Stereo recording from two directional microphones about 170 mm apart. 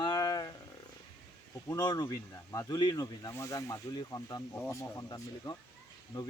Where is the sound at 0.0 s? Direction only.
25° left (ahead or behind).